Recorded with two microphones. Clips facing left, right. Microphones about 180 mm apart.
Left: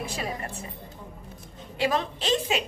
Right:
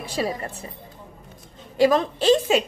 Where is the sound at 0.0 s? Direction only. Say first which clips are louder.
Right 6 dB; 35° right (ahead or behind).